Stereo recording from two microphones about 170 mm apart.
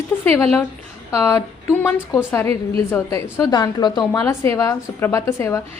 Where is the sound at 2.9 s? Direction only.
15° left (ahead or behind).